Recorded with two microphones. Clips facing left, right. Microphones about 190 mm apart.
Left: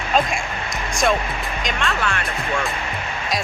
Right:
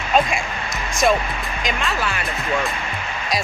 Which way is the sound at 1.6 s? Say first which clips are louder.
Even; centre (ahead or behind).